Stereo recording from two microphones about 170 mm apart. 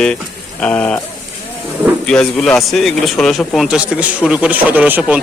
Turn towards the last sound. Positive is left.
turn(degrees=-5)  # may be behind; listen again after turning